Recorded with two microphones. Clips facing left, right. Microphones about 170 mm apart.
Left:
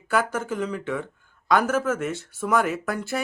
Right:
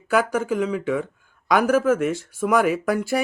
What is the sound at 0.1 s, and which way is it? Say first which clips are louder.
Speech: right 4 dB; 10° right (ahead or behind).